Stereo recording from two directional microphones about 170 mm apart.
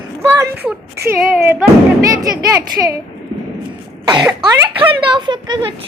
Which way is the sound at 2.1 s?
20° right (ahead or behind).